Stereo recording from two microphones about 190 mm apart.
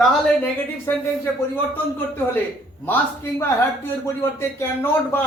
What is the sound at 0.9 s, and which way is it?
A woman's voice, 15° left (ahead or behind).